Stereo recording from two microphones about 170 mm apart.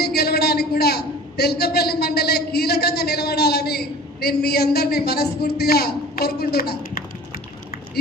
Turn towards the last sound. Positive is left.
turn(degrees=65)  # may be behind; listen again after turning